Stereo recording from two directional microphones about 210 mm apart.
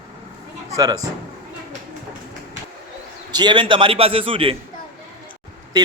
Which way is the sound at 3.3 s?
20° right (ahead or behind).